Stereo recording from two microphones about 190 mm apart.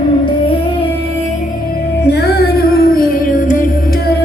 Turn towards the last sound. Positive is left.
turn(degrees=45)  # may be behind; listen again after turning